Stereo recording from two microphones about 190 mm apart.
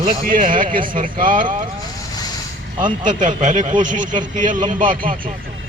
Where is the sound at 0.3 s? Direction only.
45° right (ahead or behind).